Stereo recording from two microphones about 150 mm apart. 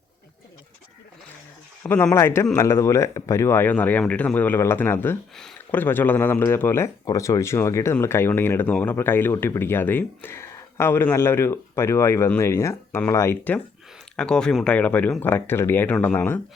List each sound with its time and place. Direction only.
1.8 s speech: 15° left (ahead or behind)